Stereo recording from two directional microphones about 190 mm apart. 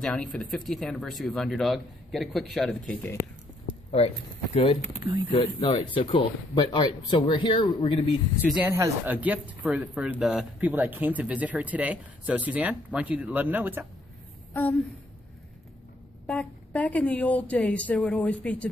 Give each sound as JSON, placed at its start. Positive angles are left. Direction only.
{"t": 0.0, "sound": "speech", "side_deg": 5}
{"t": 4.0, "sound": "speech", "side_deg": 30}
{"t": 5.3, "sound": "speech", "side_deg": 25}
{"t": 8.6, "sound": "speech", "side_deg": -15}
{"t": 14.5, "sound": "a sound", "side_deg": 10}
{"t": 16.3, "sound": "speech", "side_deg": 5}